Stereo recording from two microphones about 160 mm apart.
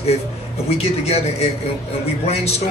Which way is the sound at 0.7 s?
40° left (ahead or behind).